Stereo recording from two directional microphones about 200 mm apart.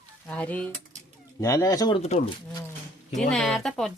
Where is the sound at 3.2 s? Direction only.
5° left (ahead or behind).